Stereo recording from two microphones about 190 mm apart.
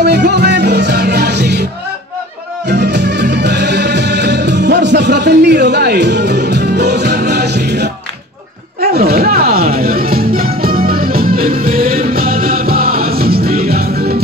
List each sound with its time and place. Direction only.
0.0 s music: 60° right (ahead or behind)
2.7 s music: 65° right (ahead or behind)
8.9 s music: 55° right (ahead or behind)